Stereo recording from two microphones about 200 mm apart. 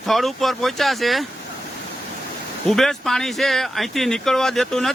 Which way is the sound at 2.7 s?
Centre (ahead or behind).